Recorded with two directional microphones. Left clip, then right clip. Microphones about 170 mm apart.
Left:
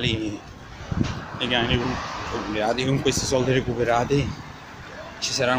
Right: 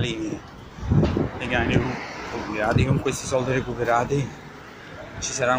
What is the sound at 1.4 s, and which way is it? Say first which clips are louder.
Speech: left 3 dB; 20° left (ahead or behind).